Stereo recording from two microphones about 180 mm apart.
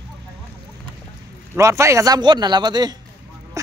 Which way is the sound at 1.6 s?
15° right (ahead or behind).